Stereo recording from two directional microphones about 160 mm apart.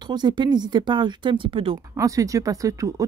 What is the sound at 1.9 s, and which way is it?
Speech, 20° right (ahead or behind).